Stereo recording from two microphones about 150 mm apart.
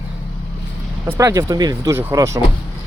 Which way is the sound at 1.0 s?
20° right (ahead or behind).